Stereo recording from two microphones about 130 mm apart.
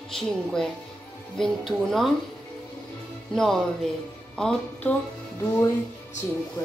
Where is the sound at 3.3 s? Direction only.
Centre (ahead or behind).